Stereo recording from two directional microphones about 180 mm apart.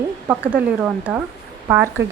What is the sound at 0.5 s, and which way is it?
Speech, 5° right (ahead or behind).